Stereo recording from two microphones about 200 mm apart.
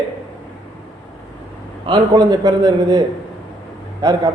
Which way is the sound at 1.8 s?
20° right (ahead or behind).